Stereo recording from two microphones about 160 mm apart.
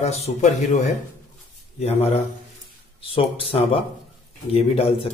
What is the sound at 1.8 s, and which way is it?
Speech, 40° left (ahead or behind).